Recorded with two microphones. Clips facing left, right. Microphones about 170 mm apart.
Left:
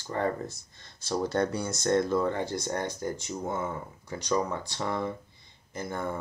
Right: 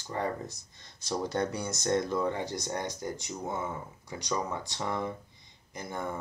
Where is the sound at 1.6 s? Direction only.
50° left (ahead or behind).